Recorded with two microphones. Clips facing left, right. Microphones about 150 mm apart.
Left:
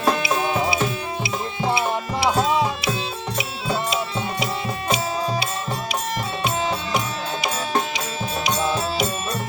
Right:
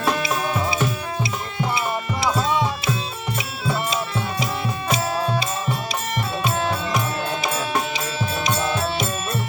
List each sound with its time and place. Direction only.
2.2 s music: 30° left (ahead or behind)
8.4 s music: centre (ahead or behind)